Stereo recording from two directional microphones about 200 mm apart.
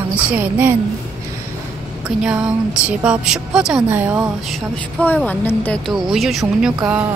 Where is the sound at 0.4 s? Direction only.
10° right (ahead or behind).